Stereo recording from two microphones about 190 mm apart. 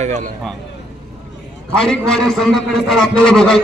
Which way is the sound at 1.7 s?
5° left (ahead or behind).